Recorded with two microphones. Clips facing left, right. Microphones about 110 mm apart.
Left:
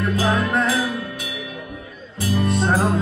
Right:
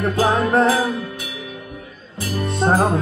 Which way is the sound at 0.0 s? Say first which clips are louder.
Right 3 dB; 30° right (ahead or behind).